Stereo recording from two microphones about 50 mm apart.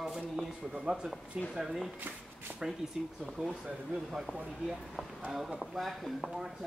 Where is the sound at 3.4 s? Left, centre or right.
Right.